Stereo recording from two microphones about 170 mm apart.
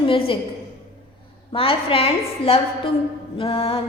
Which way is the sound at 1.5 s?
35° left (ahead or behind).